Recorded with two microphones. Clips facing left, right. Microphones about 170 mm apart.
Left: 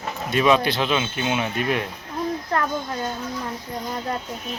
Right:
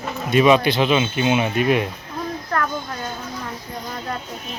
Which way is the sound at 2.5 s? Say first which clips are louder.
Right 1 dB; 20° left (ahead or behind).